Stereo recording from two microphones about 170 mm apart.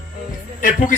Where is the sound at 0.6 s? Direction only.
50° left (ahead or behind).